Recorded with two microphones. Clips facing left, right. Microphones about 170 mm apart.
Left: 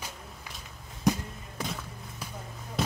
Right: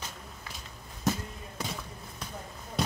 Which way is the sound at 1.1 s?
15° left (ahead or behind).